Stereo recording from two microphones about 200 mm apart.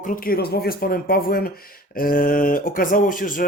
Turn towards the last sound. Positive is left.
turn(degrees=40)  # may be behind; listen again after turning